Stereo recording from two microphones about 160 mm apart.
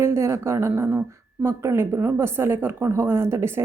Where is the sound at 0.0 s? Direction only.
15° right (ahead or behind).